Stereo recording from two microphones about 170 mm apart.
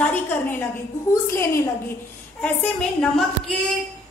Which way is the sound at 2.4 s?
5° left (ahead or behind).